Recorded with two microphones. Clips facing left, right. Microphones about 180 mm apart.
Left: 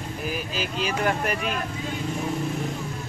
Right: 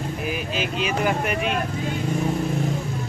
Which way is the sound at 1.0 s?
Centre (ahead or behind).